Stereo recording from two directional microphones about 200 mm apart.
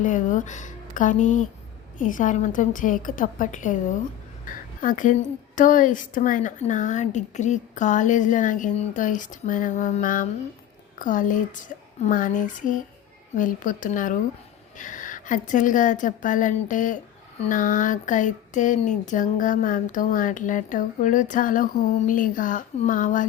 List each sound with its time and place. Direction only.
0.0 s a woman's voice: 40° left (ahead or behind)